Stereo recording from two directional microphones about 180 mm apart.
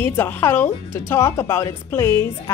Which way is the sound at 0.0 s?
15° left (ahead or behind).